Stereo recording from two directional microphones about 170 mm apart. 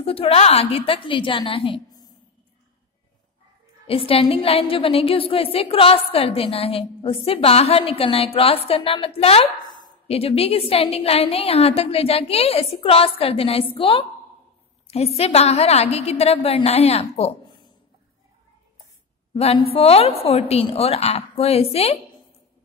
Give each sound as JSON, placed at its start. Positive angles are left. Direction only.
{"t": 0.0, "sound": "a woman's voice", "side_deg": 35}
{"t": 3.8, "sound": "a woman's voice", "side_deg": 35}
{"t": 19.3, "sound": "a woman's voice", "side_deg": 35}